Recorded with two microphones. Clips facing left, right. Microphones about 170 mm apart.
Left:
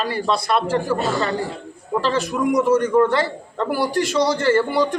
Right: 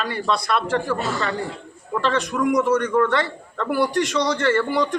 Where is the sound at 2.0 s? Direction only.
30° left (ahead or behind).